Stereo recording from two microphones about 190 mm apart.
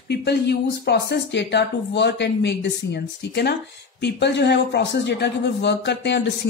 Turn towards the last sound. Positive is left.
turn(degrees=65)  # may be behind; listen again after turning